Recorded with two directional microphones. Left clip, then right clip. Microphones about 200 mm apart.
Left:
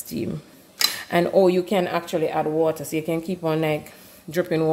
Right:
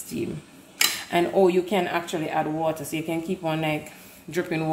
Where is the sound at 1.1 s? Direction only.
65° left (ahead or behind).